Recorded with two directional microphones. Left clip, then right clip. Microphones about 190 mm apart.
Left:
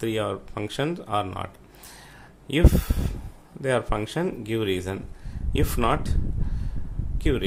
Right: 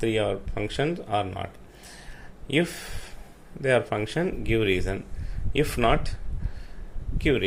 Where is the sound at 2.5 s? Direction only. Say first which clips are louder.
Left 2 dB; 20° left (ahead or behind).